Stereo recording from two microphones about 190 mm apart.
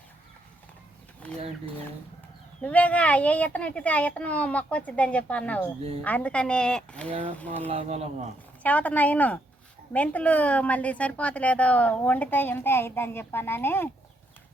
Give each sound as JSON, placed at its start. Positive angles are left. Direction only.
{"t": 2.6, "sound": "a woman's voice", "side_deg": 5}
{"t": 7.7, "sound": "speech", "side_deg": -35}
{"t": 8.6, "sound": "a woman's voice", "side_deg": 10}